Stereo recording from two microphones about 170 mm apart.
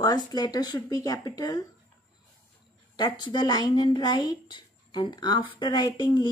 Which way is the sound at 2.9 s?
25° left (ahead or behind).